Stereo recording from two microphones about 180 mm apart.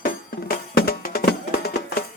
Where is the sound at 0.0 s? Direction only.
55° left (ahead or behind).